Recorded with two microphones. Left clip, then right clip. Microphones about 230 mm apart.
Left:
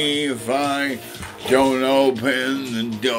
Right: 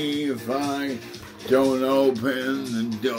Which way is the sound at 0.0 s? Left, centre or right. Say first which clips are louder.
Left 5 dB; centre.